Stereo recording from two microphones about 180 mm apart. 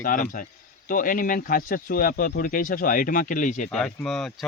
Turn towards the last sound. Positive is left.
turn(degrees=0)  # may be behind; listen again after turning